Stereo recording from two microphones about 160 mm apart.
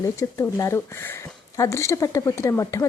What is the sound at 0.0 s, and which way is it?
Speech, 20° left (ahead or behind).